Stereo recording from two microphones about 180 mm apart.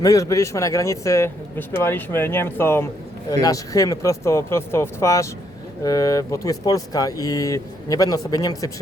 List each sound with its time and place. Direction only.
0.0 s speech: 20° left (ahead or behind)